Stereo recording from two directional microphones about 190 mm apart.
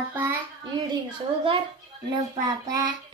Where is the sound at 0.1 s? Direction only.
10° right (ahead or behind).